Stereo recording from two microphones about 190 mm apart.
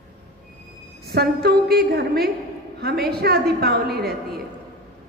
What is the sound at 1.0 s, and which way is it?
Speech, 55° right (ahead or behind).